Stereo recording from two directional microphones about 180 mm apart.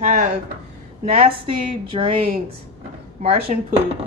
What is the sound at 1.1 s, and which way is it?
Speech, 35° right (ahead or behind).